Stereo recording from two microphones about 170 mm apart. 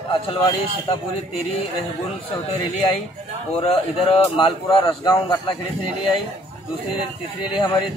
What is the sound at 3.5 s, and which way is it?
A man's voice, 35° left (ahead or behind).